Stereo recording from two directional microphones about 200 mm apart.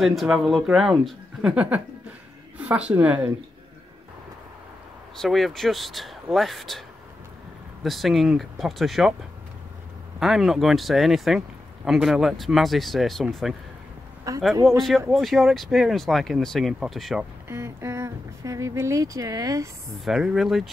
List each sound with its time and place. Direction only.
0.0 s speech: centre (ahead or behind)
5.1 s speech: centre (ahead or behind)
7.8 s speech: centre (ahead or behind)
10.2 s speech: centre (ahead or behind)
14.3 s speech: 15° right (ahead or behind)
14.8 s speech: centre (ahead or behind)
17.5 s speech: 15° right (ahead or behind)
20.1 s speech: centre (ahead or behind)